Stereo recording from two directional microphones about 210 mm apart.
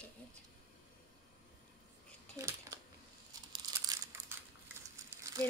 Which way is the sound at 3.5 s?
20° right (ahead or behind).